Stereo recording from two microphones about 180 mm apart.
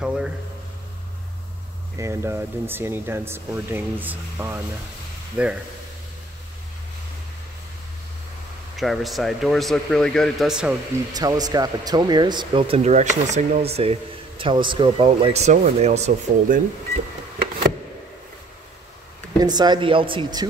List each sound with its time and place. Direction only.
0.0 s speech: 5° right (ahead or behind)
2.0 s speech: 15° right (ahead or behind)
8.7 s speech: centre (ahead or behind)
11.1 s speech: 20° right (ahead or behind); by 16.6 s 45° right (ahead or behind)
19.4 s speech: 20° right (ahead or behind)